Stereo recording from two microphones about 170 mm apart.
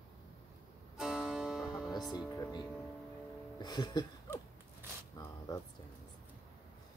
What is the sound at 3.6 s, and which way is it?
Music, 25° left (ahead or behind).